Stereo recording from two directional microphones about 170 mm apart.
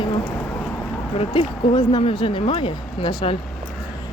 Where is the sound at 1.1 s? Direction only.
35° left (ahead or behind).